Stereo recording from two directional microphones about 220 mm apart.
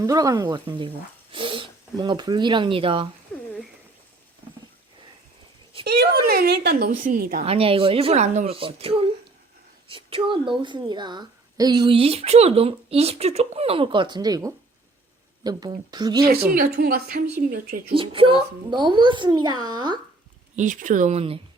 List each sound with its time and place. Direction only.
0.0 s speech: 15° right (ahead or behind)
3.3 s a sound: 5° left (ahead or behind)
5.8 s a woman's voice: 45° right (ahead or behind)
7.4 s a woman's voice: 25° right (ahead or behind)
16.6 s a woman's voice: 45° right (ahead or behind)
17.9 s a woman's voice: 25° right (ahead or behind)
20.6 s speech: 35° right (ahead or behind)